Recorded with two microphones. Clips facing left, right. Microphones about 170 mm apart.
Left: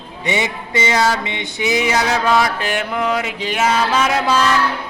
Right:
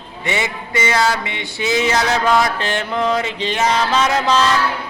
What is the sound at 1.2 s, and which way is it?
Male singing, 20° left (ahead or behind).